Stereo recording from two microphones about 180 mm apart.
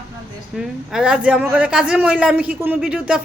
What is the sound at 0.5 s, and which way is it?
A man's voice, 5° right (ahead or behind).